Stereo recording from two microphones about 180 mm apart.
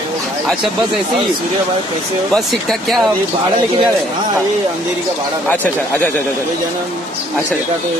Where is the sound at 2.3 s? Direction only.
Centre (ahead or behind).